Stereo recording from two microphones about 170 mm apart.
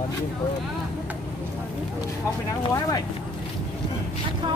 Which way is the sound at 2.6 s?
25° left (ahead or behind).